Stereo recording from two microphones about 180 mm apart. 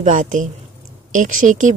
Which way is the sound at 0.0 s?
45° right (ahead or behind).